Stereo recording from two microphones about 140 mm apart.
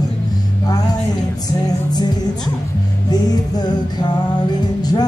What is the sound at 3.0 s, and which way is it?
Music, 30° left (ahead or behind).